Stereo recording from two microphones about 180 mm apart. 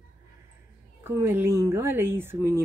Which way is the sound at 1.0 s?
15° right (ahead or behind).